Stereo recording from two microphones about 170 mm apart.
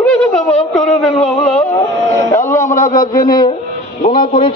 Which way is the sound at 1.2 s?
5° left (ahead or behind).